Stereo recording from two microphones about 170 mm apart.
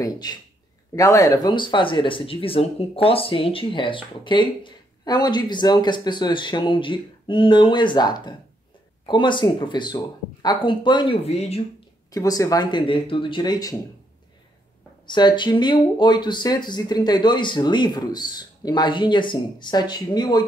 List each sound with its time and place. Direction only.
0.0 s speech: 25° left (ahead or behind)
12.1 s speech: 20° left (ahead or behind)
15.0 s speech: 25° left (ahead or behind)